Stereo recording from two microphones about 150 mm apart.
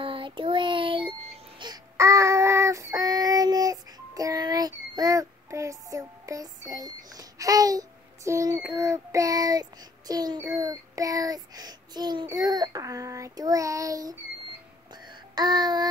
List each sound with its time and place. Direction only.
0.0 s child singing: 35° right (ahead or behind)
1.6 s child singing: 25° right (ahead or behind)
15.0 s music: 25° right (ahead or behind)